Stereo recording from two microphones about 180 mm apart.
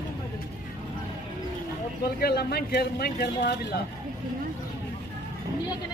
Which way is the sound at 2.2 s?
60° left (ahead or behind).